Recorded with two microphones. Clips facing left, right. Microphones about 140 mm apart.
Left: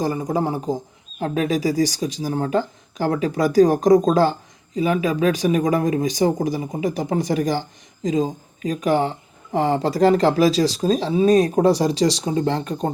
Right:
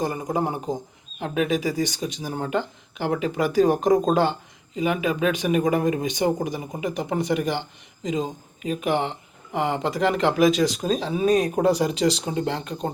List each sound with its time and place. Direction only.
0.0 s speech: 35° left (ahead or behind)